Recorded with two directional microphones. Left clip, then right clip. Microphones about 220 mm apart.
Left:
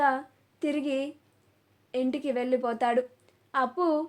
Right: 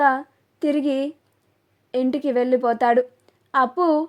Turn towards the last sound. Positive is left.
turn(degrees=-40)  # may be behind; listen again after turning